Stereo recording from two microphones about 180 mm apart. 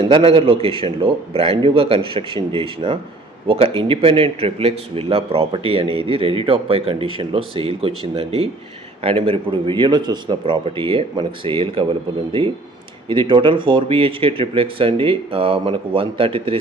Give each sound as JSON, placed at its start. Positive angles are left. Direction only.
{"t": 0.0, "sound": "a man's voice", "side_deg": -30}
{"t": 13.1, "sound": "speech", "side_deg": -30}